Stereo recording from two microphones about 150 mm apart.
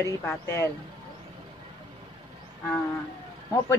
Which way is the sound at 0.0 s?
15° left (ahead or behind).